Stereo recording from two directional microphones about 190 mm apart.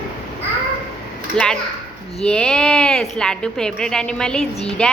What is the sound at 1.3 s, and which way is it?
A woman's voice, 5° left (ahead or behind).